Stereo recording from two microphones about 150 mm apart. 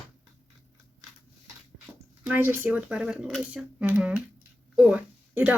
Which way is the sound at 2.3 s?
15° right (ahead or behind).